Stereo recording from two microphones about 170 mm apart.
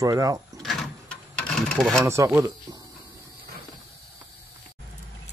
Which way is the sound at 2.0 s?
15° right (ahead or behind).